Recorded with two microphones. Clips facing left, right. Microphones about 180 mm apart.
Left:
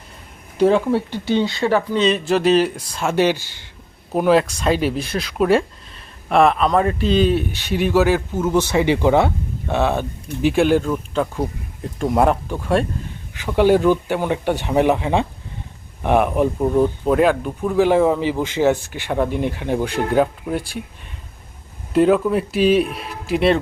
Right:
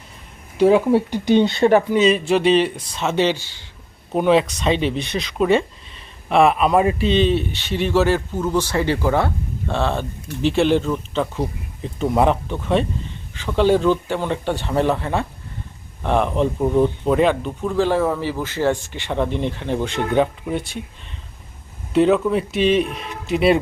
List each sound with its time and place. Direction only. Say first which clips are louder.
0.5 s speech: right 1 dB; 5° right (ahead or behind)
0.9 s speech: right 3 dB; 15° right (ahead or behind)
2.0 s speech: right 1 dB; centre (ahead or behind)
7.0 s speech: left 1 dB; 5° left (ahead or behind)
21.9 s speech: left 1 dB; 5° left (ahead or behind)